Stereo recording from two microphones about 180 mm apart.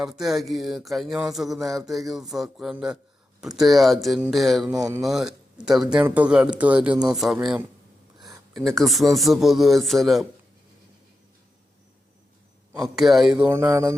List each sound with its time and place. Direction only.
0.0 s speech: centre (ahead or behind)
4.8 s speech: 15° right (ahead or behind)
5.0 s speech: centre (ahead or behind)
8.2 s a sound: centre (ahead or behind)
9.1 s speech: centre (ahead or behind)
12.8 s speech: centre (ahead or behind)